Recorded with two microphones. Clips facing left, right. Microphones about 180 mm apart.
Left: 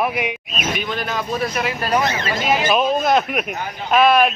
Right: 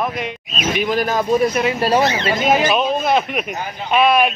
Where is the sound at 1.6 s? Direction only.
30° right (ahead or behind).